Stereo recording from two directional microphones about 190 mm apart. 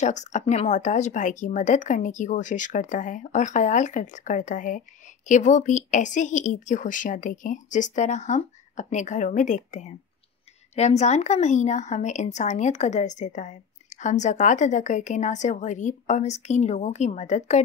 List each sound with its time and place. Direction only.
0.0 s speech: 40° left (ahead or behind)